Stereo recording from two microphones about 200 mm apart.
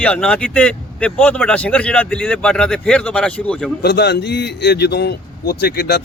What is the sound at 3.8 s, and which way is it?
A man's voice, 55° left (ahead or behind).